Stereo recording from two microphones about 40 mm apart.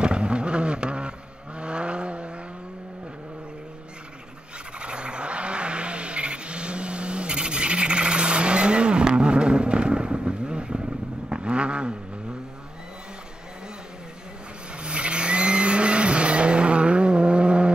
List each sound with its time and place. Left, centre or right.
0.0 s vehicle: right
4.7 s vehicle: right
14.8 s vehicle: right